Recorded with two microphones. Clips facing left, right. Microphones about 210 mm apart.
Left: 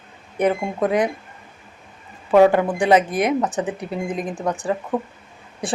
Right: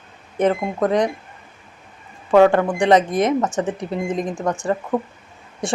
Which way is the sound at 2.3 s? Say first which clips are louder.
Right 1 dB; 15° left (ahead or behind).